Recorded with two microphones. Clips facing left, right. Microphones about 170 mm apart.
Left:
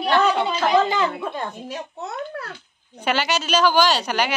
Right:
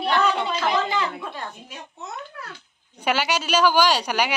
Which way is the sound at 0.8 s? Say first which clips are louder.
Left 4 dB; 45° left (ahead or behind).